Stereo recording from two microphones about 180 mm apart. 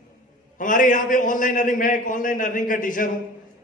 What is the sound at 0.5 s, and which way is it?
A man's voice, 45° left (ahead or behind).